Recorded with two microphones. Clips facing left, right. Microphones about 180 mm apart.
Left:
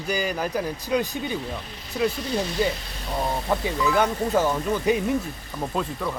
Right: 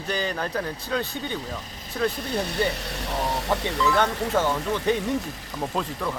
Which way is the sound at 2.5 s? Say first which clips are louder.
Left 1 dB; 75° right (ahead or behind).